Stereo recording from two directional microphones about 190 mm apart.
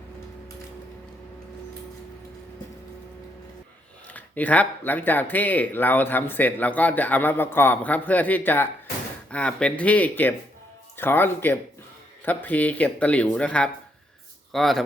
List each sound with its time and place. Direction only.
4.0 s speech: 10° left (ahead or behind)